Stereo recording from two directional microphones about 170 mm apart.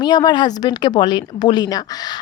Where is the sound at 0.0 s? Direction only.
25° left (ahead or behind).